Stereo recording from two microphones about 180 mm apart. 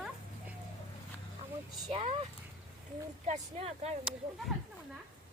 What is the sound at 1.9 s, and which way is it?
Speech, 35° right (ahead or behind).